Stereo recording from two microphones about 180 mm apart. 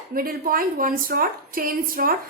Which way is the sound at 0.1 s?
50° right (ahead or behind).